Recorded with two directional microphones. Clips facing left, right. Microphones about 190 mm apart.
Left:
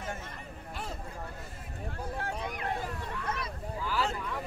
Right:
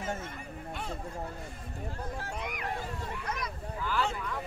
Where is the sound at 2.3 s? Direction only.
30° left (ahead or behind).